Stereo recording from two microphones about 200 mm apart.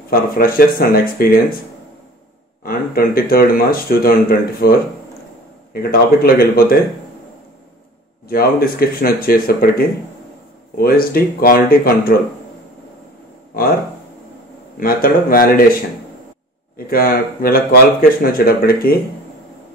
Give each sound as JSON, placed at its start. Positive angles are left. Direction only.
{"t": 0.1, "sound": "speech", "side_deg": 45}
{"t": 2.6, "sound": "speech", "side_deg": 45}
{"t": 8.3, "sound": "speech", "side_deg": 50}
{"t": 14.8, "sound": "speech", "side_deg": 45}
{"t": 16.7, "sound": "speech", "side_deg": 50}